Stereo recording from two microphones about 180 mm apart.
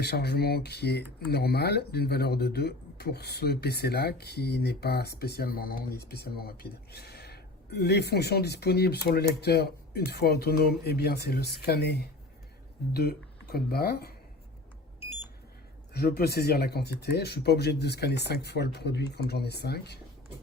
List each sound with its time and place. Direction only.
0.0 s speech: 65° left (ahead or behind)
15.9 s speech: 60° left (ahead or behind)